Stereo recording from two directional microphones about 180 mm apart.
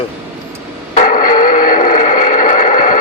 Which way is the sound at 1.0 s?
45° left (ahead or behind).